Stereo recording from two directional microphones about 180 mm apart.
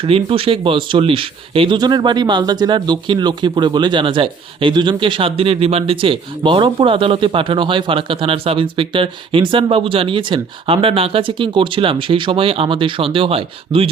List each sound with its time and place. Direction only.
0.0 s speech: 30° right (ahead or behind)